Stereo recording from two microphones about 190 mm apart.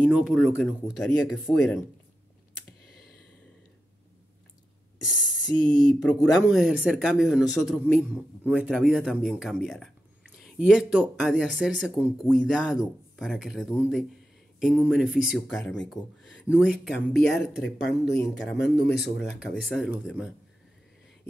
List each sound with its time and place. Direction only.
0.0 s speech: centre (ahead or behind)
5.0 s speech: 5° right (ahead or behind)
17.6 s speech: 65° left (ahead or behind)
18.1 s speech: centre (ahead or behind)